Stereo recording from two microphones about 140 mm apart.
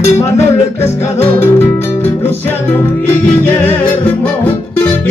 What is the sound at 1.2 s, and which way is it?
Music, 15° left (ahead or behind).